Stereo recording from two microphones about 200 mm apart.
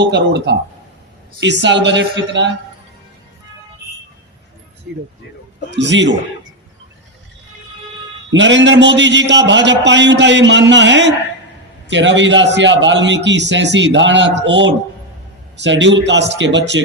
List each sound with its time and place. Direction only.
0.0 s a man's voice: 60° right (ahead or behind)
5.7 s a man's voice: 65° right (ahead or behind)
8.3 s a man's voice: 65° right (ahead or behind)